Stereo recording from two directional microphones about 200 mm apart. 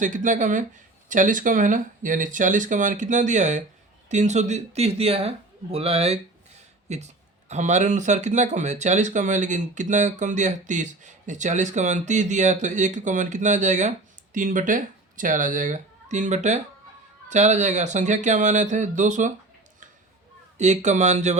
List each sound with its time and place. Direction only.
0.0 s a man's voice: 40° right (ahead or behind)
20.6 s speech: 35° right (ahead or behind)